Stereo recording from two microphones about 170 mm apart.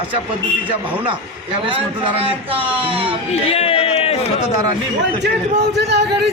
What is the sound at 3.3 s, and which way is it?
Speech, 35° left (ahead or behind).